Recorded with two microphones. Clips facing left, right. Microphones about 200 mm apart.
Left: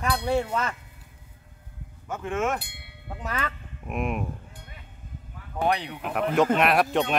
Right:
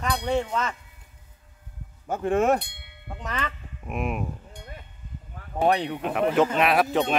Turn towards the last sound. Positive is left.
turn(degrees=0)  # may be behind; listen again after turning